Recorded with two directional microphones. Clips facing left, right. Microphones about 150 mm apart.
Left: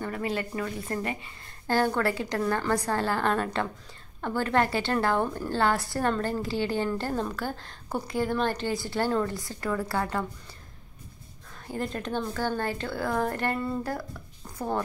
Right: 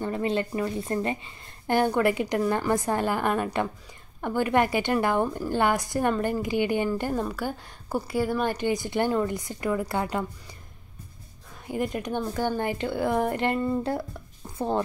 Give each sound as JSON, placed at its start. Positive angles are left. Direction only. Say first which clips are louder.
{"t": 0.0, "sound": "a woman's voice", "louder": "right 4 dB", "side_deg": -25}
{"t": 11.6, "sound": "a woman's voice", "louder": "right 3 dB", "side_deg": -15}